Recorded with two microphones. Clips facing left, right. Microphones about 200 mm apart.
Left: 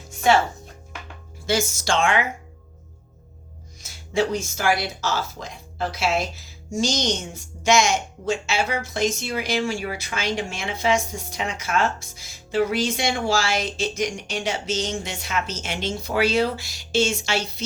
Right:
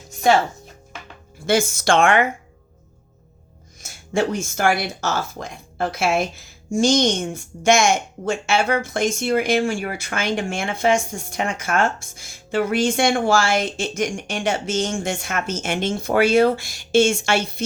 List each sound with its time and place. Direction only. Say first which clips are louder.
1.5 s a woman's voice: right 5 dB; 55° right (ahead or behind)
3.8 s speech: right 1 dB; 50° right (ahead or behind)